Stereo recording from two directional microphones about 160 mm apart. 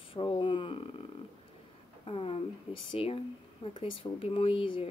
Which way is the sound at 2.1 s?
40° left (ahead or behind).